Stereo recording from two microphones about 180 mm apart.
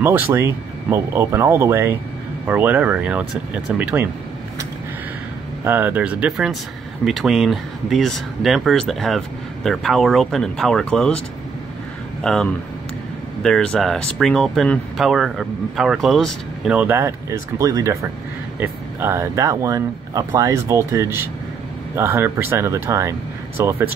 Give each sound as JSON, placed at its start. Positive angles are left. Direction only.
{"t": 0.0, "sound": "speech", "side_deg": -10}
{"t": 5.6, "sound": "speech", "side_deg": -10}
{"t": 12.2, "sound": "speech", "side_deg": 5}